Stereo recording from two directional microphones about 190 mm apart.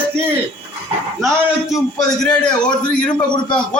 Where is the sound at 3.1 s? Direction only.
25° left (ahead or behind).